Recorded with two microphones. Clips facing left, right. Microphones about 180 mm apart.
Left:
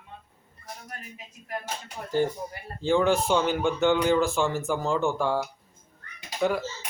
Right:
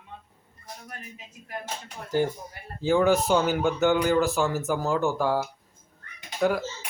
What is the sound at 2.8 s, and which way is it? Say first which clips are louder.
Speech: right 1 dB; 5° right (ahead or behind).